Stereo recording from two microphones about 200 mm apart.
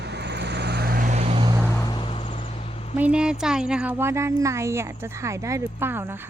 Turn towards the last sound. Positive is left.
turn(degrees=-10)  # may be behind; listen again after turning